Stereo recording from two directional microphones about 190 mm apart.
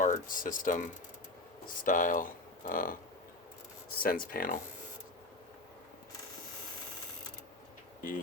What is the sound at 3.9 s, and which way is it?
Speech, 50° left (ahead or behind).